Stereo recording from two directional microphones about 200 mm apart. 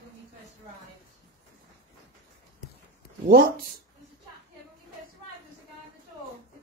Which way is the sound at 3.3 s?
45° right (ahead or behind).